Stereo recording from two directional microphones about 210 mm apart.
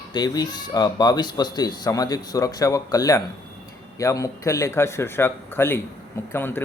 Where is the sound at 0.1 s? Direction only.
20° left (ahead or behind).